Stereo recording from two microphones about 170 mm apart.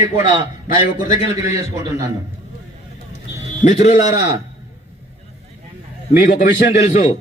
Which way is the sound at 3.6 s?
45° left (ahead or behind).